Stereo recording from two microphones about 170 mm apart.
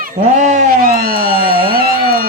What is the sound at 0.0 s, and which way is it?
Cat, 45° right (ahead or behind).